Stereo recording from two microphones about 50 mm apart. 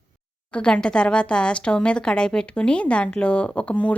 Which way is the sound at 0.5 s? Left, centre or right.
Centre.